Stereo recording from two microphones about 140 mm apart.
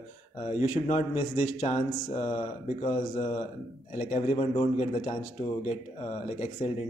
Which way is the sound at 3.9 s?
60° left (ahead or behind).